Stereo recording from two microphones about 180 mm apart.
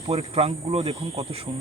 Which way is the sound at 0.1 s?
35° right (ahead or behind).